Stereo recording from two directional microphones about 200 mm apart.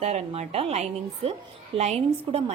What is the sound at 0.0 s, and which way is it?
A woman's voice, 35° right (ahead or behind).